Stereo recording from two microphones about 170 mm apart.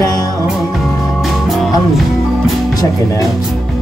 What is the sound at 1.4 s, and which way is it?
Music, centre (ahead or behind).